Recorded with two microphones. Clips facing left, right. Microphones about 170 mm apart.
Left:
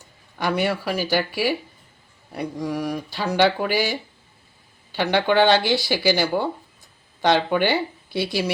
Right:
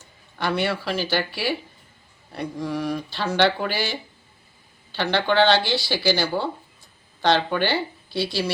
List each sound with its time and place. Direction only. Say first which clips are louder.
0.3 s speech: left 2 dB; 10° left (ahead or behind)
5.1 s speech: left 1 dB; 15° left (ahead or behind)